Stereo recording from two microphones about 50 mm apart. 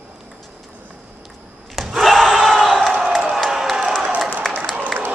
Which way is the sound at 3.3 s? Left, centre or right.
Centre.